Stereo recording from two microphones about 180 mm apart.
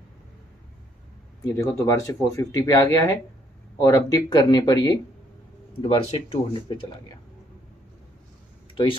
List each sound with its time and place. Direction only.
1.4 s speech: 15° left (ahead or behind)